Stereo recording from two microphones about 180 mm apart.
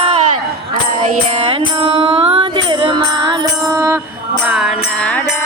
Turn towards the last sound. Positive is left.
turn(degrees=-5)  # may be behind; listen again after turning